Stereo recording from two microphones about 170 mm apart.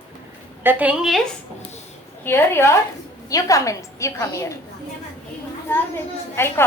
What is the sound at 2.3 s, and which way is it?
A woman's voice, 15° left (ahead or behind).